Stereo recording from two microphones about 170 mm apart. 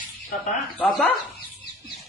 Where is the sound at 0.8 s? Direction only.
10° left (ahead or behind).